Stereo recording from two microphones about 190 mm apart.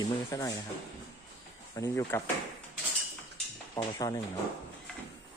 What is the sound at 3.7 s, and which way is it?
Speech, 20° left (ahead or behind).